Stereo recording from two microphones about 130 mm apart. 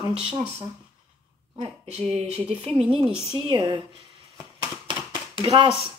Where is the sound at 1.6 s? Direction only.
55° right (ahead or behind).